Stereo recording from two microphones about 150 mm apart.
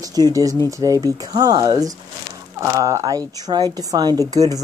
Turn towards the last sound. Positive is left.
turn(degrees=-25)  # may be behind; listen again after turning